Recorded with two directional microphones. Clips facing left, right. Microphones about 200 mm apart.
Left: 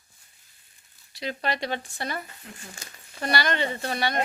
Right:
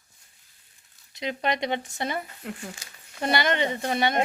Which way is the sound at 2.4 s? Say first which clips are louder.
Right 9 dB; 75° right (ahead or behind).